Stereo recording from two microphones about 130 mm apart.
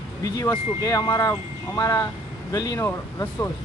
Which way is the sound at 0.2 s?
25° left (ahead or behind).